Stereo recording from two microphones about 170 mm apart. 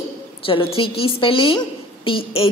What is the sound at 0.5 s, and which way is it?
Speech, 30° left (ahead or behind).